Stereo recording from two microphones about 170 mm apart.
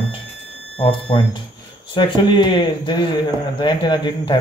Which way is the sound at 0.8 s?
30° left (ahead or behind).